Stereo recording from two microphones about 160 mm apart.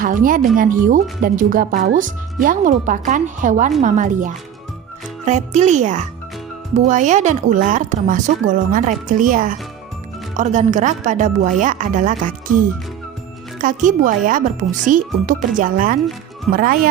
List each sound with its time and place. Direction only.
0.0 s speech: 60° right (ahead or behind)